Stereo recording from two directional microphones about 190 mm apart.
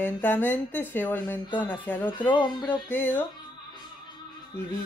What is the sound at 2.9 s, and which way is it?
Speech, 10° left (ahead or behind).